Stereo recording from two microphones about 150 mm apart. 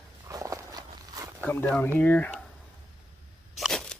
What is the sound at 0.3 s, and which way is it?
Walk, 20° right (ahead or behind).